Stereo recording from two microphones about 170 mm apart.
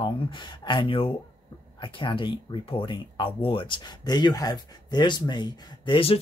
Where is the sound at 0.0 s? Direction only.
25° left (ahead or behind).